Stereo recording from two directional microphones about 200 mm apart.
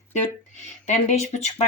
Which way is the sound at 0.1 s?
35° left (ahead or behind).